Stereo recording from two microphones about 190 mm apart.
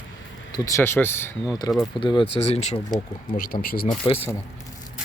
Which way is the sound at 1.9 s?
25° left (ahead or behind).